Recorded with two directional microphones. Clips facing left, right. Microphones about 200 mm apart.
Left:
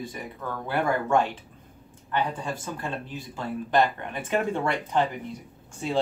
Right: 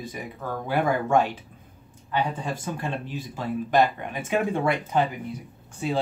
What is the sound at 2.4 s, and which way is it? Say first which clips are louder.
Speech: right 2 dB; 20° right (ahead or behind).